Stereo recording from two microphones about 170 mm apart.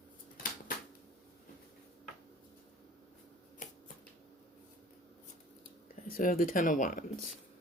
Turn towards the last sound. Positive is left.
turn(degrees=50)  # may be behind; listen again after turning